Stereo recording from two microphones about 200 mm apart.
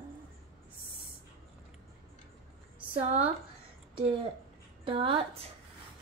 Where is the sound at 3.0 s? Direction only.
30° right (ahead or behind).